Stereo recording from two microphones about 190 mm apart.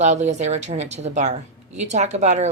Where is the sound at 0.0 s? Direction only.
35° right (ahead or behind).